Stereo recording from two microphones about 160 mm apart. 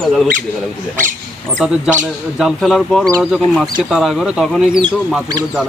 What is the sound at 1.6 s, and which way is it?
Speech, centre (ahead or behind).